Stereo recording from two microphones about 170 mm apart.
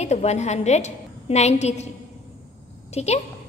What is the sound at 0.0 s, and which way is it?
A woman's voice, 40° left (ahead or behind).